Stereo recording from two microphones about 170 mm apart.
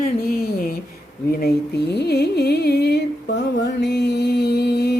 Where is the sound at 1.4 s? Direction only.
80° left.